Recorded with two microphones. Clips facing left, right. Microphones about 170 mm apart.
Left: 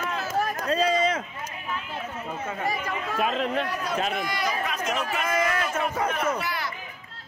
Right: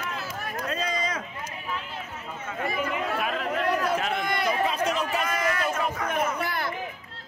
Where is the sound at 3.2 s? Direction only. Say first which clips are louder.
Left 4 dB; 25° left (ahead or behind).